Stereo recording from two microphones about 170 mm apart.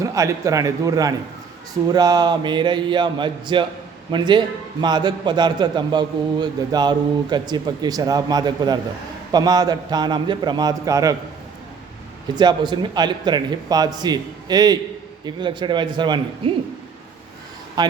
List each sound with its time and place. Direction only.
0.0 s a man's voice: 20° right (ahead or behind)
12.3 s a man's voice: 25° right (ahead or behind)
17.8 s a man's voice: 25° right (ahead or behind)